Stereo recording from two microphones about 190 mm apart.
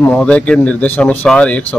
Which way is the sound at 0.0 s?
5° left (ahead or behind).